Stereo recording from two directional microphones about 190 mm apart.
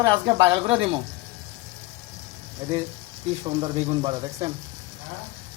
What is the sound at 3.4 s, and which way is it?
Speech, 25° right (ahead or behind).